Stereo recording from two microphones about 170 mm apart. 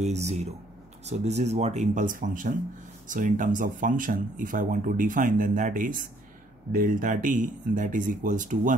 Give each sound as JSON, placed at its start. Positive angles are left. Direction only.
{"t": 0.0, "sound": "speech", "side_deg": -40}